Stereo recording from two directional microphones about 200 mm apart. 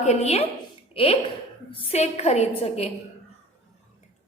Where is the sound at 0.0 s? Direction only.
35° left (ahead or behind).